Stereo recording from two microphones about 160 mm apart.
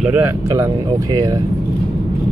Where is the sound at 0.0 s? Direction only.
10° right (ahead or behind).